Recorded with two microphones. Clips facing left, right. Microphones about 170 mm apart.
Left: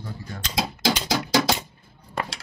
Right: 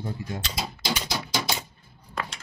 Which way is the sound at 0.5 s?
90° left.